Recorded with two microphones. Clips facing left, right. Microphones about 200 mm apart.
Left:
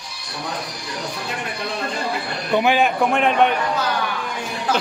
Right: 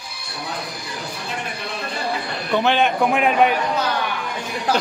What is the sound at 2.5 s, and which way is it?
A man's voice, 10° left (ahead or behind).